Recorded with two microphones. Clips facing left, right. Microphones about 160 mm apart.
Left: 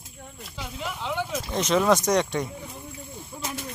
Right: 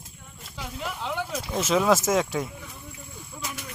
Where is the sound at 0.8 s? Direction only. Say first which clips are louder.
Left 1 dB; centre (ahead or behind).